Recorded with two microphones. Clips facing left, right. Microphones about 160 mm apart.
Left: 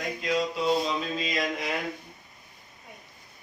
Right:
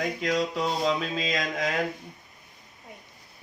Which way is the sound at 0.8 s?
90° right.